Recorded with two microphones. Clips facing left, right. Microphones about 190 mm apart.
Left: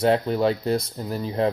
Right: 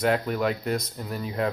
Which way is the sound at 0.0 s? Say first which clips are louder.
Left 4 dB; 30° left (ahead or behind).